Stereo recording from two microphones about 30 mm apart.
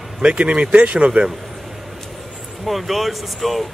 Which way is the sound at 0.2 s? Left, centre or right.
Right.